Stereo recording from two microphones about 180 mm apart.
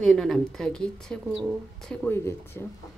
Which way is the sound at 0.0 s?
Centre (ahead or behind).